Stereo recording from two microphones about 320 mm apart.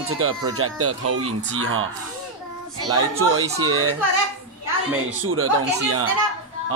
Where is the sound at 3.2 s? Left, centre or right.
Right.